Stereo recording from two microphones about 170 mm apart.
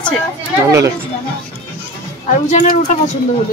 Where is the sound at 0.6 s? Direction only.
20° right (ahead or behind).